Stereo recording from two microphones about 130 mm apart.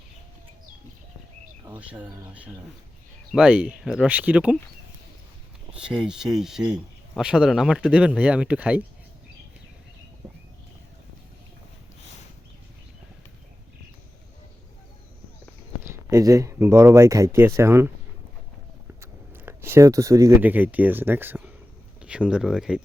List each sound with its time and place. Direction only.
1.7 s speech: 15° right (ahead or behind)
6.0 s speech: 5° right (ahead or behind)
15.9 s speech: 20° right (ahead or behind)
19.3 s a sound: 20° right (ahead or behind)
20.4 s speech: 15° right (ahead or behind)